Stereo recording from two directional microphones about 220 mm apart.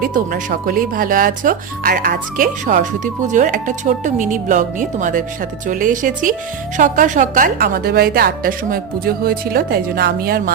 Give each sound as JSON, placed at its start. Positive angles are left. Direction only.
{"t": 0.0, "sound": "speech", "side_deg": -40}